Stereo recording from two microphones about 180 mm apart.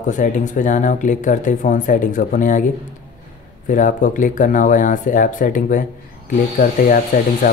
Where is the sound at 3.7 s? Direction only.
45° left (ahead or behind).